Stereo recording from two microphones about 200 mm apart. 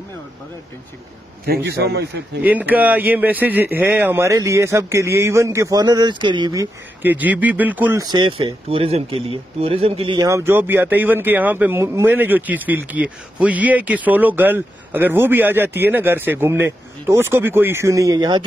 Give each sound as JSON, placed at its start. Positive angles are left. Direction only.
{"t": 1.4, "sound": "a man's voice", "side_deg": -50}
{"t": 2.4, "sound": "speech", "side_deg": -10}